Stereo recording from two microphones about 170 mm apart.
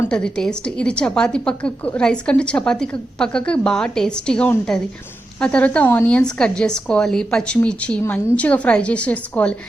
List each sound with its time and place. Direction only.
0.0 s a woman's voice: 5° left (ahead or behind)